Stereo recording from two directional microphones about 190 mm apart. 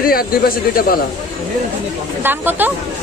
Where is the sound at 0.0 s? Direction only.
50° left (ahead or behind).